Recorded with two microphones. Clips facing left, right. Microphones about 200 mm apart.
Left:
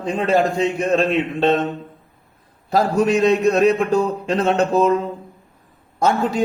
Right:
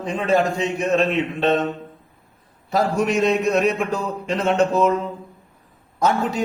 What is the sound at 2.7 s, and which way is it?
A man's voice, 35° left (ahead or behind).